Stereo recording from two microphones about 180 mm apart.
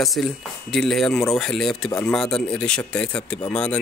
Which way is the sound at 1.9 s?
15° left (ahead or behind).